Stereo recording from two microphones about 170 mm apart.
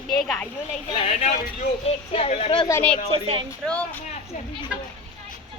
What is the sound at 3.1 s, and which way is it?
Speech, 30° right (ahead or behind).